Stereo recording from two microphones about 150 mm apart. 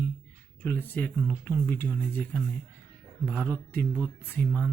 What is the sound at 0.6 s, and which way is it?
Speech, 10° left (ahead or behind).